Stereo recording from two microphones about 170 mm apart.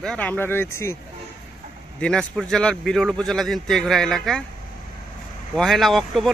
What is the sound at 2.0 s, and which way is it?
A man's voice, 5° left (ahead or behind).